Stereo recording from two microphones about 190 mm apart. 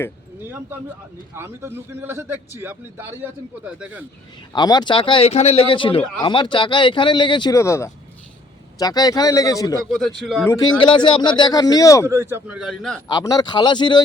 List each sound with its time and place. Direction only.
0.4 s a sound: 10° right (ahead or behind)
1.4 s a man's voice: 15° right (ahead or behind)
4.5 s speech: 20° left (ahead or behind)
9.9 s speech: centre (ahead or behind)
10.4 s speech: 15° left (ahead or behind)
12.0 s a man's voice: 15° right (ahead or behind)
13.1 s speech: 20° left (ahead or behind)